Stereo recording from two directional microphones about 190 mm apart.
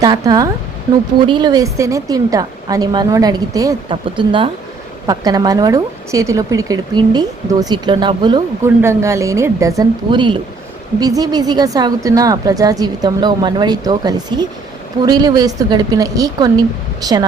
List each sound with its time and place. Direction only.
0.0 s a woman's voice: 20° right (ahead or behind)
8.6 s a woman's voice: 15° right (ahead or behind)